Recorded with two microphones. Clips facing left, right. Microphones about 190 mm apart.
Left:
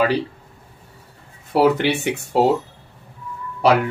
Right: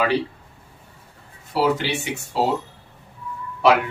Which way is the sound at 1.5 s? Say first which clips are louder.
Left 5 dB; 60° left (ahead or behind).